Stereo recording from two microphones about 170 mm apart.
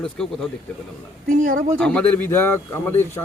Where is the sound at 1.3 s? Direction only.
50° right (ahead or behind).